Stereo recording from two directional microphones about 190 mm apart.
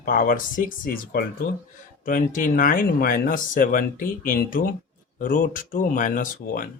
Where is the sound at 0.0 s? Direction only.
45° left (ahead or behind).